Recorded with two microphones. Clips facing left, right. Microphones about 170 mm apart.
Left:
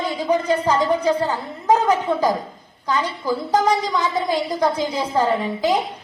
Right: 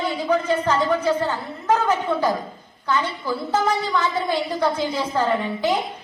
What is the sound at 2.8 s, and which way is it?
Speech, 35° left (ahead or behind).